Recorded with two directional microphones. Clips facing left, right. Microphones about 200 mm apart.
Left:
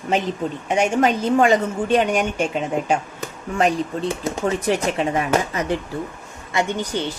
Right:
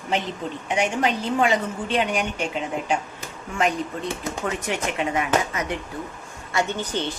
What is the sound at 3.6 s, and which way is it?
Speech, 35° left (ahead or behind).